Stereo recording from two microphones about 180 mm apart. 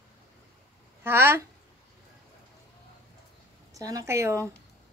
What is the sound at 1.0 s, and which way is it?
Speech, 10° right (ahead or behind).